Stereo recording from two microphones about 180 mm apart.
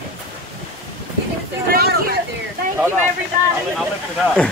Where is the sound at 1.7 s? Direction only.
60° right (ahead or behind).